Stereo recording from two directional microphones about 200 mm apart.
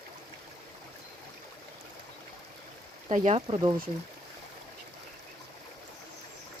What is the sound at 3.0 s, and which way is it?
Speech, 35° right (ahead or behind).